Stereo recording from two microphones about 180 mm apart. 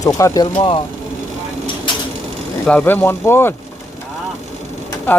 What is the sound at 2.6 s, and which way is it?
Speech, 10° left (ahead or behind).